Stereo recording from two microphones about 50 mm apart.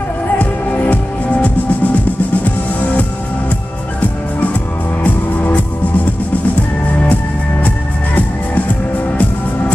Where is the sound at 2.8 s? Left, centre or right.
Left.